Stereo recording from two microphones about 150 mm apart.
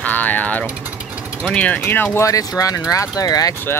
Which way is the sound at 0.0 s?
10° left (ahead or behind).